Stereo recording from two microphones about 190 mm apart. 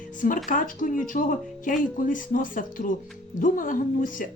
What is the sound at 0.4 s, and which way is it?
Speech, 45° left (ahead or behind).